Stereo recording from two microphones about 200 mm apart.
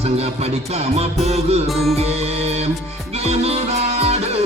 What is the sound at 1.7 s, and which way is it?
Music, centre (ahead or behind).